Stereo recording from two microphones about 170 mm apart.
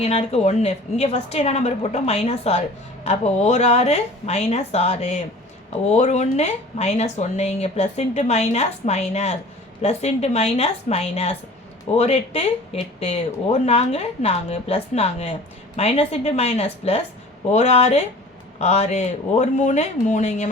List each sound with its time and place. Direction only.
0.0 s a woman's voice: 40° left (ahead or behind)